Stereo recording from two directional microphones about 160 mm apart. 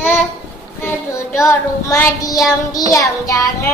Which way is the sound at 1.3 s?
20° left (ahead or behind).